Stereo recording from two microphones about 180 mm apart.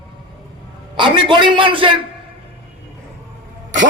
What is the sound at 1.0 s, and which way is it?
A man's voice, 25° right (ahead or behind).